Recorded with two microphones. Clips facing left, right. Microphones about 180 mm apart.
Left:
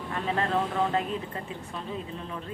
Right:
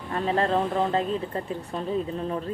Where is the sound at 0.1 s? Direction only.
35° right (ahead or behind).